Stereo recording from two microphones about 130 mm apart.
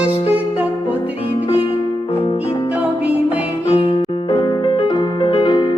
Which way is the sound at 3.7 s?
45° left (ahead or behind).